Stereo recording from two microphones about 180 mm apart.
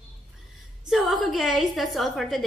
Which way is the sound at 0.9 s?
Centre (ahead or behind).